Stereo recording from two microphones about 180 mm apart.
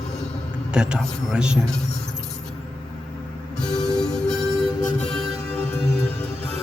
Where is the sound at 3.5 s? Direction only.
5° left (ahead or behind).